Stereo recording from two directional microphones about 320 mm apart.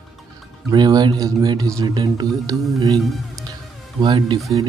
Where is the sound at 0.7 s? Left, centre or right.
Centre.